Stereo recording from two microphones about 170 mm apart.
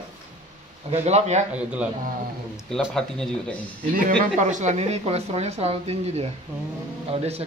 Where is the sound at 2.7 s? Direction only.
5° left (ahead or behind).